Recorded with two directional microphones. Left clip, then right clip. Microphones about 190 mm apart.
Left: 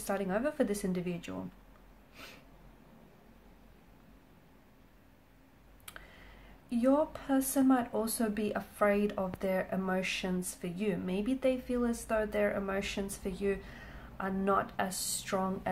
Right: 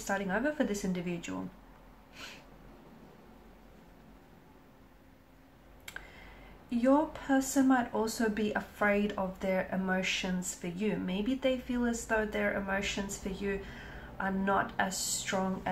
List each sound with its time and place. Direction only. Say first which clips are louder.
0.0 s speech: right 1 dB; 40° left (ahead or behind)
6.7 s speech: right 1 dB; 40° left (ahead or behind)